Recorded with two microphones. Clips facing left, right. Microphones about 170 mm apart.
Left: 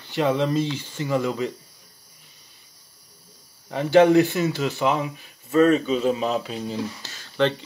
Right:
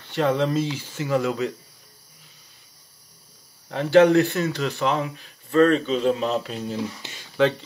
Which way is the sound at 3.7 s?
5° left (ahead or behind).